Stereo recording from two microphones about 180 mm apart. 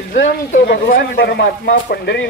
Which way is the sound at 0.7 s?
55° left (ahead or behind).